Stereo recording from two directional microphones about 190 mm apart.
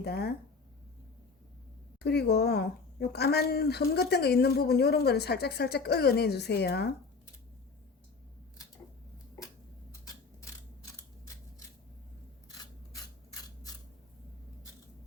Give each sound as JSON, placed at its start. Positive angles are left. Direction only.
{"t": 0.0, "sound": "speech", "side_deg": 55}
{"t": 2.0, "sound": "speech", "side_deg": 60}